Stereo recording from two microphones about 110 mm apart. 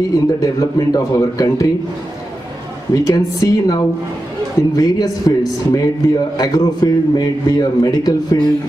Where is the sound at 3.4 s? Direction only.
35° left (ahead or behind).